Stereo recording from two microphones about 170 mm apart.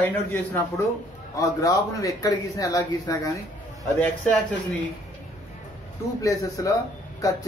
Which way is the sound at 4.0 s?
10° left (ahead or behind).